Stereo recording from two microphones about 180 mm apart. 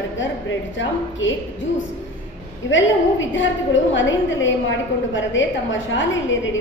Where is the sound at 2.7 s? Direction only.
90° left.